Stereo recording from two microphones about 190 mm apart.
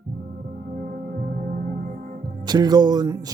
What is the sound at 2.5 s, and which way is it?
Speech, 20° right (ahead or behind).